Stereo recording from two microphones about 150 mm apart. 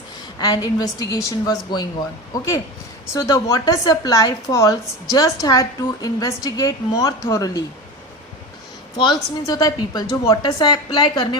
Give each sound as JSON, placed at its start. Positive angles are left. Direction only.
{"t": 0.3, "sound": "a woman's voice", "side_deg": 25}
{"t": 9.0, "sound": "a woman's voice", "side_deg": 25}